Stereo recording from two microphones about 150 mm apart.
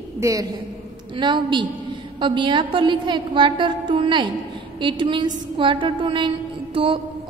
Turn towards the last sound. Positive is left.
turn(degrees=-35)  # may be behind; listen again after turning